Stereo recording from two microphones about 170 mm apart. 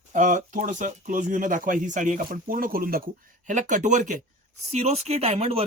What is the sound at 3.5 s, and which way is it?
Speech, 50° right (ahead or behind).